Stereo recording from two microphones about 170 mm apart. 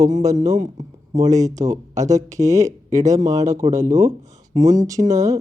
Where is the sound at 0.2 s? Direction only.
20° right (ahead or behind).